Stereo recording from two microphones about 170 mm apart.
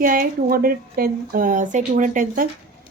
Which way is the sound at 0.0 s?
55° right (ahead or behind).